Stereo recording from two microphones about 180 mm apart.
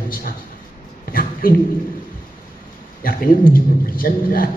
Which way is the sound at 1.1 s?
55° left (ahead or behind).